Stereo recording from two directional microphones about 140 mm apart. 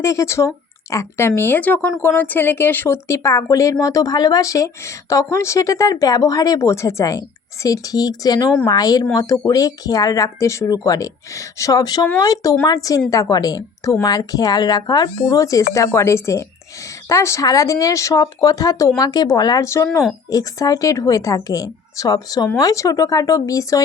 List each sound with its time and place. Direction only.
0.0 s speech: 20° left (ahead or behind)